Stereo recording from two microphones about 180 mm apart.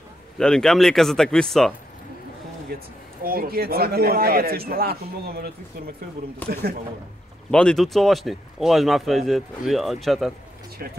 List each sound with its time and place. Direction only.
0.4 s speech: 5° left (ahead or behind)
3.3 s a man's voice: 55° right (ahead or behind)
6.4 s speech: 10° left (ahead or behind)
10.8 s a man's voice: 60° right (ahead or behind)